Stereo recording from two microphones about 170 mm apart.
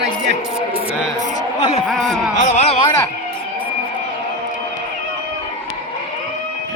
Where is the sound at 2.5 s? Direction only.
40° left (ahead or behind).